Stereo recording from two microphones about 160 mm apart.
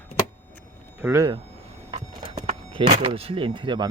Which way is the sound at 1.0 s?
20° right (ahead or behind).